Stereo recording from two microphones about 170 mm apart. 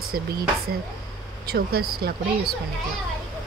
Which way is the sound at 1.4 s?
65° right (ahead or behind).